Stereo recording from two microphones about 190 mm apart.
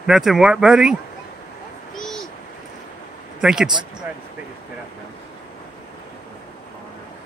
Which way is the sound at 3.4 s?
5° right (ahead or behind).